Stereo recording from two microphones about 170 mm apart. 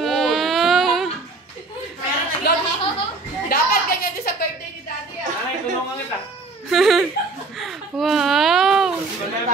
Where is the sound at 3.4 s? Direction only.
55° left (ahead or behind).